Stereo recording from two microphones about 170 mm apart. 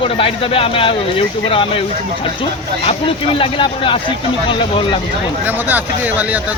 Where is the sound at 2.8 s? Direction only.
30° left (ahead or behind).